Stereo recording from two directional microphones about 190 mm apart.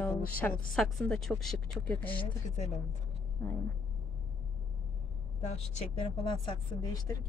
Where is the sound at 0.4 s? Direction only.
5° left (ahead or behind).